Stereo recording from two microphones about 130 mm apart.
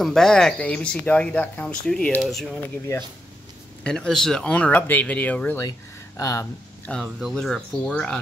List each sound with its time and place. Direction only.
0.0 s speech: 5° left (ahead or behind)
2.2 s speech: 5° right (ahead or behind)
3.8 s speech: 5° left (ahead or behind)
5.6 s speech: 25° left (ahead or behind)
7.2 s speech: centre (ahead or behind)